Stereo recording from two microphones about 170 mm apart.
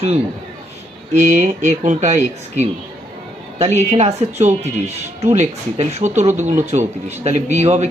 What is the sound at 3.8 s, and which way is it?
Speech, 40° right (ahead or behind).